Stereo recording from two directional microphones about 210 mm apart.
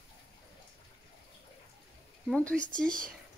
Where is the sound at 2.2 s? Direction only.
5° left (ahead or behind).